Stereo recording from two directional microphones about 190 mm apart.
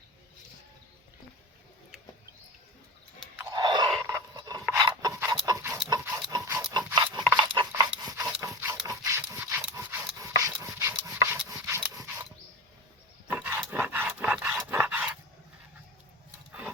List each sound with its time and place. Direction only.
3.5 s dog: 20° right (ahead or behind)
4.0 s filing: 20° right (ahead or behind)
5.3 s livestock: 20° right (ahead or behind)
6.3 s dog: 15° right (ahead or behind)
6.7 s a sound: 20° right (ahead or behind)
7.7 s dog: 20° right (ahead or behind)
13.2 s dog: 10° right (ahead or behind)
16.5 s dog: 5° right (ahead or behind)